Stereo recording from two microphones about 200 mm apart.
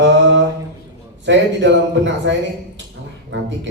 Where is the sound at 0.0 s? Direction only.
65° right (ahead or behind).